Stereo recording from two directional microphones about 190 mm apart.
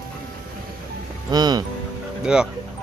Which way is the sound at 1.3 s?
20° right (ahead or behind).